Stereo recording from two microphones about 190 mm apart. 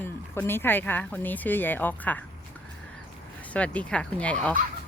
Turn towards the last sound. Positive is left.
turn(degrees=5)  # may be behind; listen again after turning